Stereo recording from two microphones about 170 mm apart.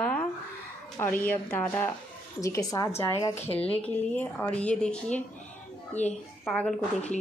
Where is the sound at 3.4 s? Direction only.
10° left (ahead or behind).